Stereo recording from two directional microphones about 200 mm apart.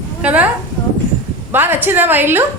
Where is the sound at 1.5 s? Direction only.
10° right (ahead or behind).